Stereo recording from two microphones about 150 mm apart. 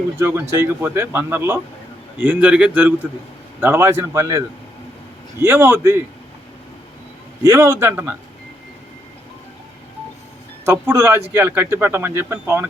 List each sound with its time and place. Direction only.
0.2 s a man's voice: 15° right (ahead or behind)
7.5 s speech: 20° right (ahead or behind)
10.7 s speech: 15° right (ahead or behind)